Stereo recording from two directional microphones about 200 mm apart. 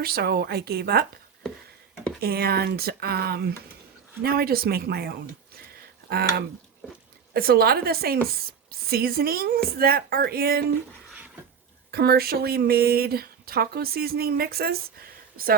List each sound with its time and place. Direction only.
0.0 s speech: 50° right (ahead or behind)
2.2 s speech: 50° right (ahead or behind)
11.9 s speech: 50° right (ahead or behind)